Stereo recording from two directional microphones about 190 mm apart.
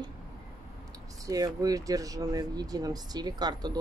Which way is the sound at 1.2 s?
20° right (ahead or behind).